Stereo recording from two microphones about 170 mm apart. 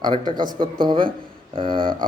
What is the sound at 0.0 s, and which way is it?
Speech, 25° right (ahead or behind).